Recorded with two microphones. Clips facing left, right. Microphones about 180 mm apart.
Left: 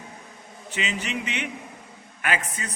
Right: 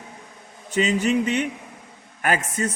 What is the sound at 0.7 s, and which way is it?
A man's voice, 40° right (ahead or behind).